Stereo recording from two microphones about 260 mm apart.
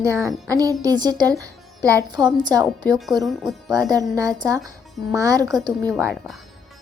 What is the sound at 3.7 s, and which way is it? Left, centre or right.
A woman's voice, centre.